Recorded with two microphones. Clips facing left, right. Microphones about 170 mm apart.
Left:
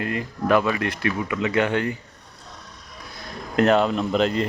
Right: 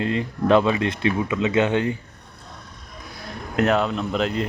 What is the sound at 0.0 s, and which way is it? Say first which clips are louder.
A man's voice: right 3 dB; 25° right (ahead or behind).